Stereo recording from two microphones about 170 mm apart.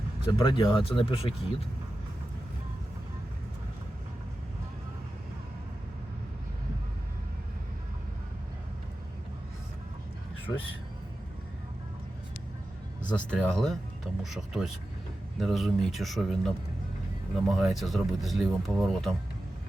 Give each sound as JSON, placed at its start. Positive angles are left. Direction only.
{"t": 0.3, "sound": "speech", "side_deg": 30}
{"t": 13.1, "sound": "speech", "side_deg": 5}